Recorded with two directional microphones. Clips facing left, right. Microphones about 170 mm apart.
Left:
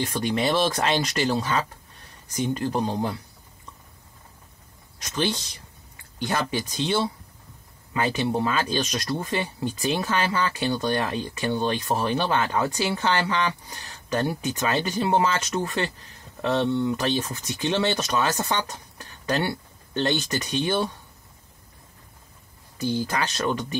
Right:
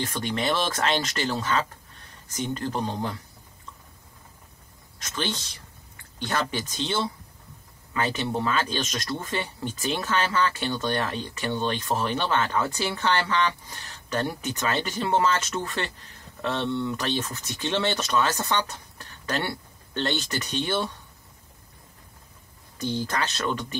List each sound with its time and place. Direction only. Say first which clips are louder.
0.0 s speech: left 3 dB; 15° left (ahead or behind)
5.0 s speech: left 4 dB; 15° left (ahead or behind)
22.8 s speech: left 2 dB; 10° left (ahead or behind)